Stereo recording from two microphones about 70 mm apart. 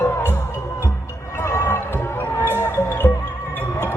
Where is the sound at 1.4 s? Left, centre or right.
Left.